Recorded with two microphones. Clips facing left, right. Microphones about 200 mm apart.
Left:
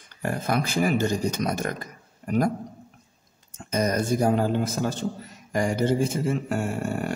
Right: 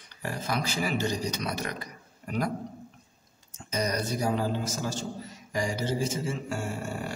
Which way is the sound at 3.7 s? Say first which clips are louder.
Left 6 dB; 50° left (ahead or behind).